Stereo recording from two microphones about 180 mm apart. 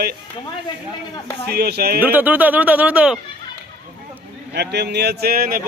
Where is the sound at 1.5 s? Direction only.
65° right (ahead or behind).